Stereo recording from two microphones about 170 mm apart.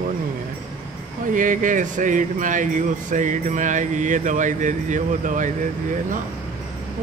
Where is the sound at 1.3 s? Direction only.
50° right (ahead or behind).